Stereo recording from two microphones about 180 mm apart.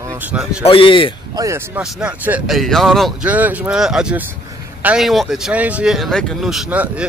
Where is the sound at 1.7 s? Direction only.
10° right (ahead or behind).